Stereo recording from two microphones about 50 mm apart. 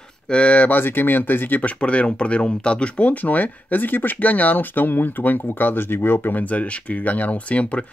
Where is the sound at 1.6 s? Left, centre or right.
Left.